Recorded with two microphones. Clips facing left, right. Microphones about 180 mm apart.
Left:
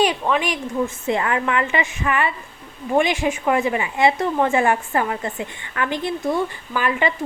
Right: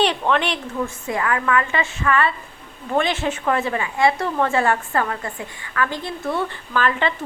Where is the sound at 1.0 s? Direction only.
25° left (ahead or behind).